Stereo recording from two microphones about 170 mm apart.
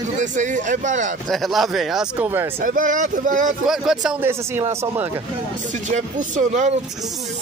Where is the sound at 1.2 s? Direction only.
Centre (ahead or behind).